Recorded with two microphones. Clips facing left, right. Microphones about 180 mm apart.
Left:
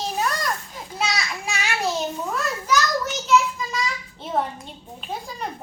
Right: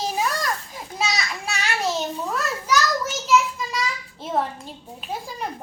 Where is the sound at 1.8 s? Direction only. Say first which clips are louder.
Even; centre (ahead or behind).